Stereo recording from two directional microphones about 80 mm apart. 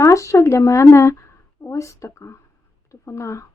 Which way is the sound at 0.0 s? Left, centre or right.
Left.